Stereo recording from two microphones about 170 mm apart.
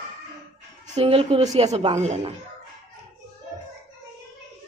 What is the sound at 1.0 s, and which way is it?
Speech, 35° right (ahead or behind).